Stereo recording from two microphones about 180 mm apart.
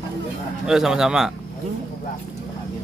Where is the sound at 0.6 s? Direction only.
5° right (ahead or behind).